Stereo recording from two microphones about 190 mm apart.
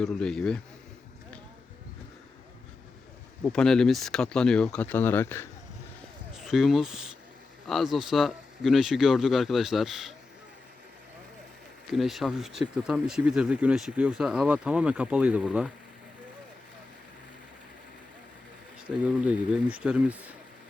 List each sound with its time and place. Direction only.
0.0 s speech: 5° left (ahead or behind)
3.4 s speech: 5° left (ahead or behind)
6.4 s speech: centre (ahead or behind)
11.9 s speech: centre (ahead or behind)
18.9 s speech: 5° right (ahead or behind)